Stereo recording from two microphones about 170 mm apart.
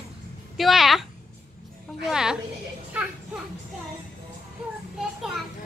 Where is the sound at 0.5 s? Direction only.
Centre (ahead or behind).